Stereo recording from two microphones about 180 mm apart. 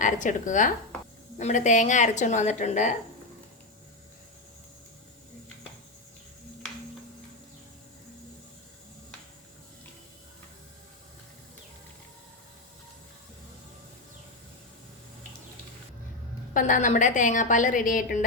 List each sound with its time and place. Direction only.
0.0 s a woman's voice: 45° left (ahead or behind)
16.6 s a woman's voice: 45° left (ahead or behind)